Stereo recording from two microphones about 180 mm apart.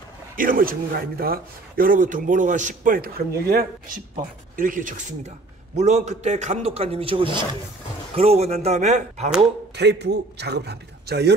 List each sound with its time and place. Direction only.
0.4 s speech: 50° right (ahead or behind)
4.6 s a man's voice: 50° right (ahead or behind)
9.8 s a man's voice: 70° right (ahead or behind)